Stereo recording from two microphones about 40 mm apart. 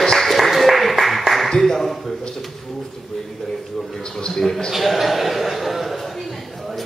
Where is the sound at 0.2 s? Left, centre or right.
Centre.